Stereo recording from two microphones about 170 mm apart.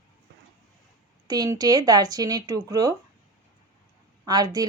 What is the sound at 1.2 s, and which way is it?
Speech, 20° right (ahead or behind).